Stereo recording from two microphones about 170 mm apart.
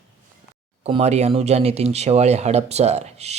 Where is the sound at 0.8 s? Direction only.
40° right (ahead or behind).